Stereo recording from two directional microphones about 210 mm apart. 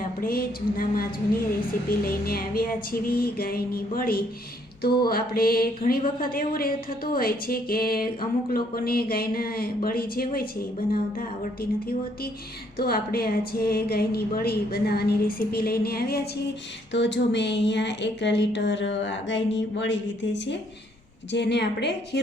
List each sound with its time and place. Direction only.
0.2 s speech: 45° left (ahead or behind)